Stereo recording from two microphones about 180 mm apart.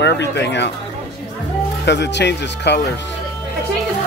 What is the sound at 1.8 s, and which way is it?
Speech, 75° left (ahead or behind).